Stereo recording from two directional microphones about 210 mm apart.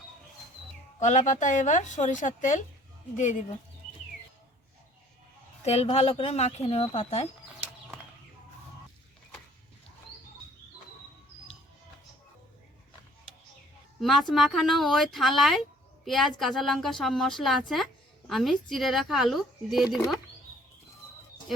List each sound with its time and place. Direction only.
0.9 s a woman's voice: 35° left (ahead or behind)
5.6 s a woman's voice: 30° left (ahead or behind)
14.0 s a woman's voice: centre (ahead or behind)